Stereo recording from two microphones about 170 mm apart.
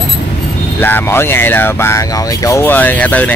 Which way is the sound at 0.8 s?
10° left (ahead or behind).